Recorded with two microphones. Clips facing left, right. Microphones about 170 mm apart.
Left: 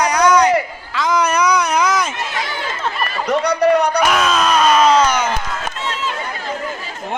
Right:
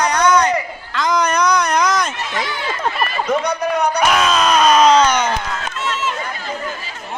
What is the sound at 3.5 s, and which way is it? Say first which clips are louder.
Speech: left 4 dB; 70° left (ahead or behind).